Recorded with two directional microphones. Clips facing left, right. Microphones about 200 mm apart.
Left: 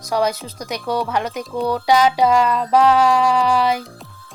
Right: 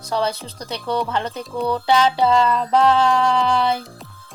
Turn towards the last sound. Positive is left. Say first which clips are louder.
# left 2 dB
turn(degrees=10)  # may be behind; listen again after turning